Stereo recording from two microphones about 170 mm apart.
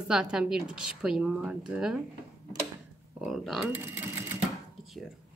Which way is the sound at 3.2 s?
Centre (ahead or behind).